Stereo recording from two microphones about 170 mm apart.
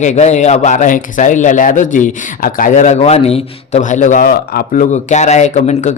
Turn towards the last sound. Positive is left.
turn(degrees=40)  # may be behind; listen again after turning